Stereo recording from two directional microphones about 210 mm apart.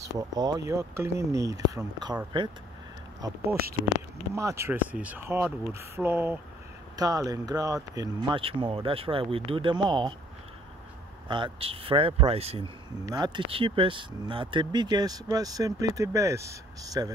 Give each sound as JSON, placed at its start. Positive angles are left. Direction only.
{"t": 0.0, "sound": "speech", "side_deg": -15}
{"t": 11.2, "sound": "speech", "side_deg": -25}